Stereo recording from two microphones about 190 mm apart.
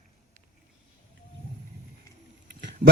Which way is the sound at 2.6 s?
65° right (ahead or behind).